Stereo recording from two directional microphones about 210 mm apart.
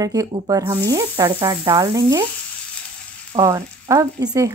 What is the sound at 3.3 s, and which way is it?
Speech, 15° right (ahead or behind).